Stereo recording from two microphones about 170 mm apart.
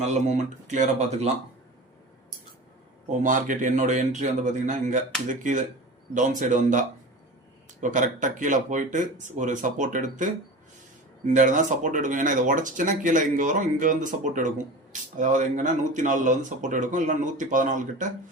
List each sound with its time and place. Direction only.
0.0 s speech: 40° right (ahead or behind)
3.2 s speech: 50° right (ahead or behind)
11.3 s speech: 45° right (ahead or behind)